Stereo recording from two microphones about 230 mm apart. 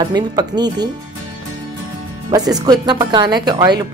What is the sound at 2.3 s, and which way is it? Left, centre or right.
A woman's voice, centre.